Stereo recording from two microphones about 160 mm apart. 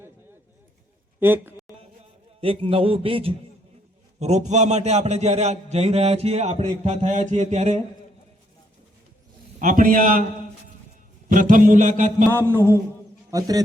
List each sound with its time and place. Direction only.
1.2 s speech: 15° right (ahead or behind)
2.4 s a man's voice: 35° right (ahead or behind)
9.6 s a man's voice: 55° right (ahead or behind)
11.3 s a man's voice: 55° right (ahead or behind)
12.3 s a man's voice: 15° right (ahead or behind)